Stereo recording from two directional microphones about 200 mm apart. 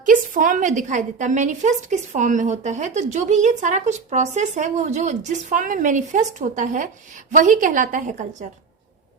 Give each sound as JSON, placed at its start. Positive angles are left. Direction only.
{"t": 0.0, "sound": "a woman's voice", "side_deg": -40}